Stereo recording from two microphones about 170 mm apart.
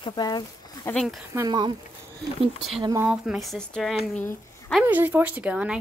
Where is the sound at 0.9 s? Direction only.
Centre (ahead or behind).